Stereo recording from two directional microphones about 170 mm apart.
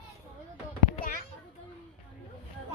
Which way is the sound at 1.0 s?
50° left (ahead or behind).